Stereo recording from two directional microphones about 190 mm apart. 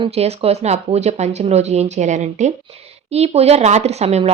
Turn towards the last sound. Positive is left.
turn(degrees=-35)  # may be behind; listen again after turning